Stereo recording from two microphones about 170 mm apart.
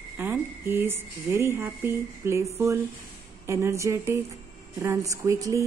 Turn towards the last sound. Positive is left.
turn(degrees=-20)  # may be behind; listen again after turning